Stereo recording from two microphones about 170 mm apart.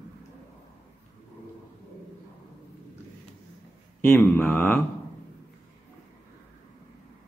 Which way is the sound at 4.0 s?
10° left (ahead or behind).